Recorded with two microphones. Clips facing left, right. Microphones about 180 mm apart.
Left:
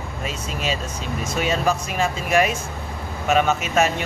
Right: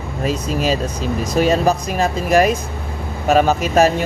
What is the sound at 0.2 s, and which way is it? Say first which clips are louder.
Speech: right 9 dB; 40° right (ahead or behind).